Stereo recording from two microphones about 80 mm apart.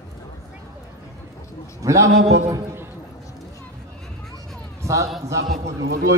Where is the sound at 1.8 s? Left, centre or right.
Right.